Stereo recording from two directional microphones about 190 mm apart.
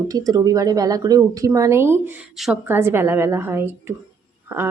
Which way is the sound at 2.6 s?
10° right (ahead or behind).